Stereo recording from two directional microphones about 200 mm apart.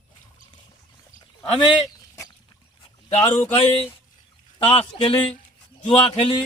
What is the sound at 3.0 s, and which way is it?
Speech, 15° left (ahead or behind).